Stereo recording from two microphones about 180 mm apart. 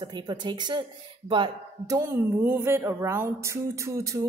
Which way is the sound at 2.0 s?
15° right (ahead or behind).